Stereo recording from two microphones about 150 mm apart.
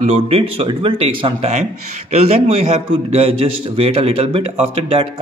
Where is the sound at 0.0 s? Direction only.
45° right (ahead or behind).